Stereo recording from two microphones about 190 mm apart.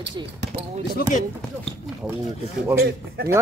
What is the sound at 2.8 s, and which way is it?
Speech, 60° right (ahead or behind).